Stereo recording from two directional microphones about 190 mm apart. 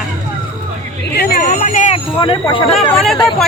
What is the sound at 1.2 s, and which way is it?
Speech, 55° left (ahead or behind).